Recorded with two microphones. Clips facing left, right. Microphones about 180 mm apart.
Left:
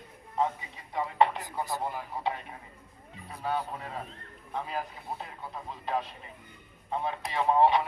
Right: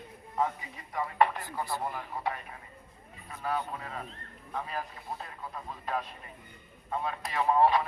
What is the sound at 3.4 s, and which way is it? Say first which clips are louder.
Speech: left 1 dB; 25° left (ahead or behind).